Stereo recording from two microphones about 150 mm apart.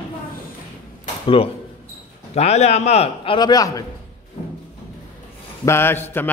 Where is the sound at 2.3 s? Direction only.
45° left (ahead or behind); by 3.9 s 25° left (ahead or behind).